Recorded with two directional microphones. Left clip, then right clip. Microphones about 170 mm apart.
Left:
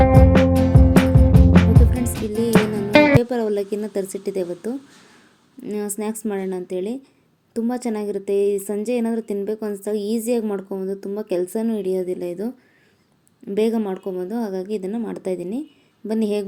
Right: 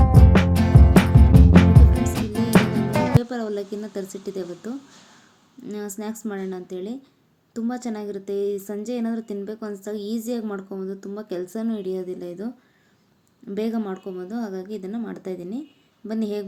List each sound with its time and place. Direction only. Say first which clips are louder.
0.0 s music: left 7 dB; centre (ahead or behind)
3.2 s a sound: left 6 dB; 10° left (ahead or behind)
5.7 s a woman's voice: left 6 dB; 15° left (ahead or behind)
13.7 s a woman's voice: left 6 dB; 10° left (ahead or behind)
15.2 s a woman's voice: left 7 dB; 30° right (ahead or behind)
16.0 s a woman's voice: left 6 dB; 15° left (ahead or behind)